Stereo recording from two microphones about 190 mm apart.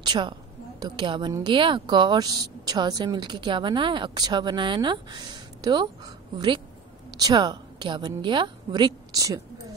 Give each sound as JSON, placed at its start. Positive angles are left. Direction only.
{"t": 0.0, "sound": "a woman's voice", "side_deg": -25}